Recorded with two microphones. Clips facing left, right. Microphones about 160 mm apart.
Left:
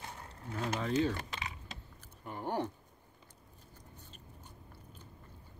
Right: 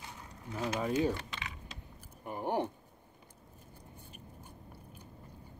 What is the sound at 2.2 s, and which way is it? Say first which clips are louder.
Speech: right 3 dB; 15° right (ahead or behind).